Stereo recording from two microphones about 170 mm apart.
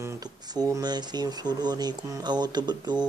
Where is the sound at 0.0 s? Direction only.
20° right (ahead or behind).